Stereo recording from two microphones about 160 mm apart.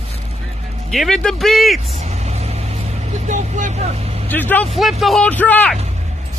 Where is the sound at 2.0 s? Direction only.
45° right (ahead or behind).